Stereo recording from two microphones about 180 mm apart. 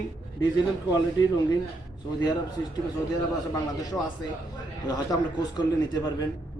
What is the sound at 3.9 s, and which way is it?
A man's voice, 15° left (ahead or behind).